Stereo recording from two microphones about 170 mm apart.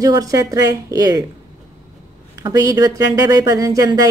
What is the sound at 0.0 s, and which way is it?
A woman's voice, 20° right (ahead or behind).